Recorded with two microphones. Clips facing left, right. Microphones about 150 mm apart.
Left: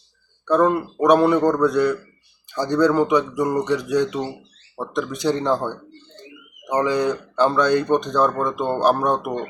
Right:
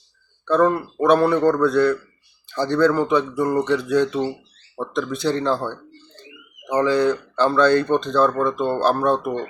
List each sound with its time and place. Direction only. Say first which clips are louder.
0.4 s speech: even; 15° left (ahead or behind)